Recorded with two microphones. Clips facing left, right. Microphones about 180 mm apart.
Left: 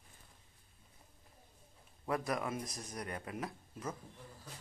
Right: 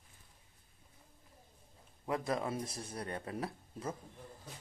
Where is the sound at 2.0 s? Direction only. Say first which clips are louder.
Right 1 dB; 25° right (ahead or behind).